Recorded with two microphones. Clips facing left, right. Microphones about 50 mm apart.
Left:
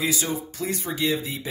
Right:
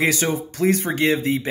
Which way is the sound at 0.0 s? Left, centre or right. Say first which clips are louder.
Right 6 dB; right.